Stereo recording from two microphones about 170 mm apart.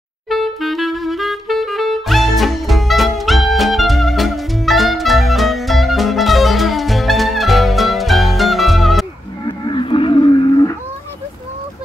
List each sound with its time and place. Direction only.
0.3 s saxophone: centre (ahead or behind)
9.7 s cattle: 30° left (ahead or behind)